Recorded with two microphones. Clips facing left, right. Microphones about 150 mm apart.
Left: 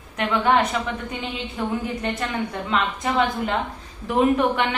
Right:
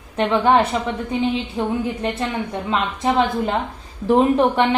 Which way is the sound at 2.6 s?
30° right (ahead or behind).